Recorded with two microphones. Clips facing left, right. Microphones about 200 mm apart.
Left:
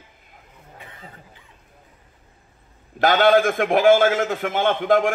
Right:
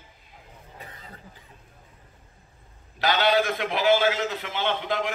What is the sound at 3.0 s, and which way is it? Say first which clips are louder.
A man's voice: left 7 dB; 50° left (ahead or behind).